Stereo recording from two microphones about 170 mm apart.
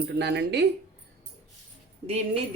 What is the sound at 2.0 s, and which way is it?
Speech, 35° right (ahead or behind).